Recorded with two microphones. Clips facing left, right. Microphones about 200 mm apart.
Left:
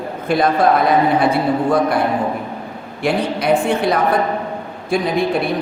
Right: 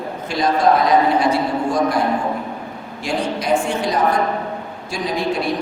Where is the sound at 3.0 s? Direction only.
60° left (ahead or behind).